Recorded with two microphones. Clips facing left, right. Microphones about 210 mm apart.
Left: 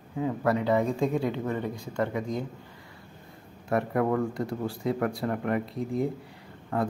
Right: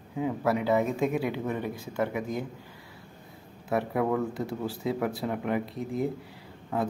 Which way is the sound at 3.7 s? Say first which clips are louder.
Left 1 dB; 5° right (ahead or behind).